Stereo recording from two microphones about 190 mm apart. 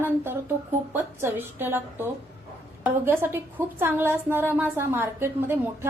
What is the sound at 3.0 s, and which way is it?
A woman's voice, 10° right (ahead or behind).